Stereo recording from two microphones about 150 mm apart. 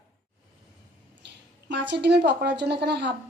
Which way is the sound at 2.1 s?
90° right.